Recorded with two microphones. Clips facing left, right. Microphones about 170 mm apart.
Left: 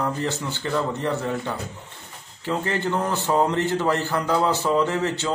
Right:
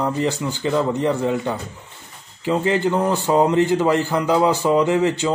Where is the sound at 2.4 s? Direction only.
15° right (ahead or behind).